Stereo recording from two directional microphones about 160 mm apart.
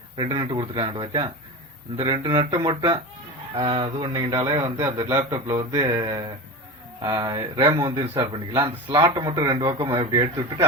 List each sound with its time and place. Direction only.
0.2 s a man's voice: 30° right (ahead or behind)